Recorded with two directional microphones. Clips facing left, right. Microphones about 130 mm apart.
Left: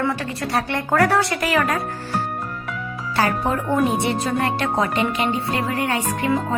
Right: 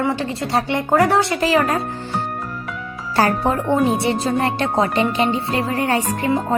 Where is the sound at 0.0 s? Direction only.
25° right (ahead or behind).